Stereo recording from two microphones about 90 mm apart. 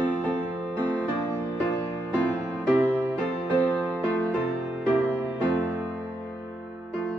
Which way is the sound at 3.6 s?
15° left (ahead or behind).